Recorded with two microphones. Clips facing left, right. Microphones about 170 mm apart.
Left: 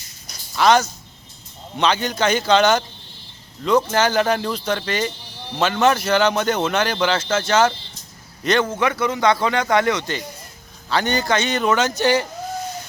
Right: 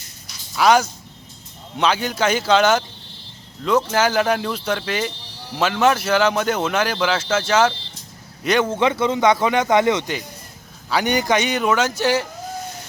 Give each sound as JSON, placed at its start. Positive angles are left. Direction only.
{"t": 0.5, "sound": "a man's voice", "side_deg": -10}
{"t": 8.8, "sound": "speech", "side_deg": -25}